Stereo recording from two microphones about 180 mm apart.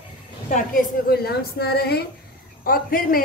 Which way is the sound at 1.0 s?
60° left (ahead or behind).